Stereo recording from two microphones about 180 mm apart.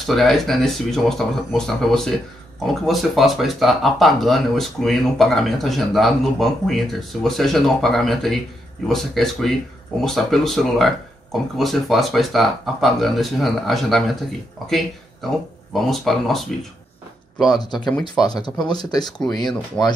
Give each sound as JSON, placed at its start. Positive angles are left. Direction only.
{"t": 0.0, "sound": "speech", "side_deg": 0}
{"t": 15.7, "sound": "speech", "side_deg": 0}
{"t": 17.6, "sound": "speech", "side_deg": 25}
{"t": 19.8, "sound": "speech", "side_deg": 5}